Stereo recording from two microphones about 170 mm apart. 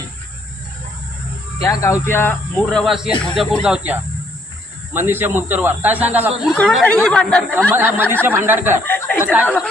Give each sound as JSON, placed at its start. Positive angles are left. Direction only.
{"t": 1.6, "sound": "speech", "side_deg": 20}
{"t": 2.6, "sound": "speech", "side_deg": 5}
{"t": 6.4, "sound": "speech", "side_deg": 0}
{"t": 7.7, "sound": "speech", "side_deg": -10}
{"t": 8.9, "sound": "speech", "side_deg": 10}
{"t": 9.2, "sound": "speech", "side_deg": -10}